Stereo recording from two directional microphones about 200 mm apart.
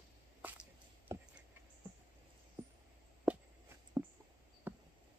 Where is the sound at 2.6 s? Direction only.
10° right (ahead or behind).